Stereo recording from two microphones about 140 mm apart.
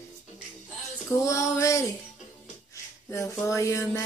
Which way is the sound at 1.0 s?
20° left (ahead or behind).